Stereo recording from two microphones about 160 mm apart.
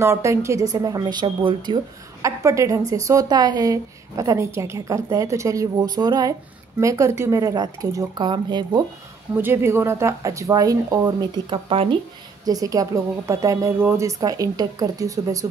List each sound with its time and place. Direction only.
0.0 s a woman's voice: 20° right (ahead or behind)
2.2 s a woman's voice: 20° right (ahead or behind)
9.3 s a woman's voice: 15° right (ahead or behind); by 12.0 s 35° right (ahead or behind)
12.4 s a woman's voice: 20° right (ahead or behind)